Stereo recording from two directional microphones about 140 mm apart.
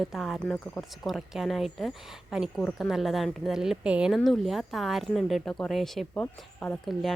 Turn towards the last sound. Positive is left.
turn(degrees=0)  # may be behind; listen again after turning